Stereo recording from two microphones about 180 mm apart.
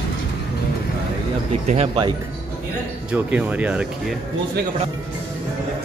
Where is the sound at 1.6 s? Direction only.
35° right (ahead or behind).